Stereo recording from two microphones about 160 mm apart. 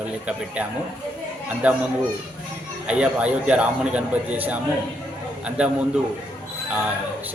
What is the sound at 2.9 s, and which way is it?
Speech, 5° right (ahead or behind).